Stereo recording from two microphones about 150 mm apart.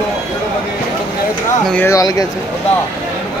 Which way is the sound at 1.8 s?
25° left (ahead or behind).